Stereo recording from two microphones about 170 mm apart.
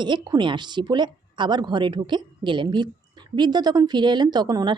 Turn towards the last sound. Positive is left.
turn(degrees=-25)  # may be behind; listen again after turning